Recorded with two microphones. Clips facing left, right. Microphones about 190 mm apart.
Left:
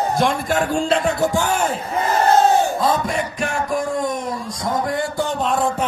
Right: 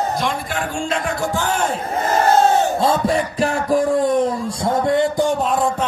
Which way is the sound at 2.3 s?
30° right (ahead or behind).